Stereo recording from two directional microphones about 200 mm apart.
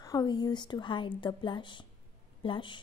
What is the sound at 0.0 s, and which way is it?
A woman's voice, 20° left (ahead or behind).